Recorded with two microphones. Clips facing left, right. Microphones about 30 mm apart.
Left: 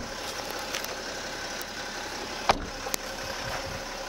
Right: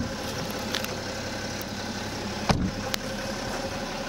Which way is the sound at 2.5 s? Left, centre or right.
Centre.